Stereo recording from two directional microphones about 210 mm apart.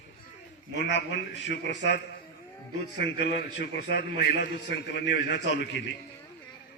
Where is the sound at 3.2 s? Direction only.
50° left (ahead or behind).